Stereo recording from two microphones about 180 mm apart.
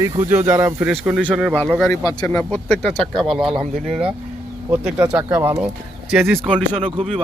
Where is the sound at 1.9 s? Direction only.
20° left (ahead or behind).